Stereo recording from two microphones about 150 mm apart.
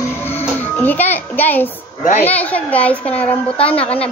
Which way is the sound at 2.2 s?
10° left (ahead or behind).